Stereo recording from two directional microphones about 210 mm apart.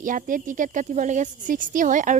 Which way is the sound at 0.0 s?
40° right (ahead or behind).